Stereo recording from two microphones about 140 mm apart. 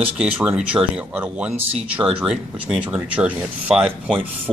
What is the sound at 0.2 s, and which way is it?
Speech, 10° right (ahead or behind).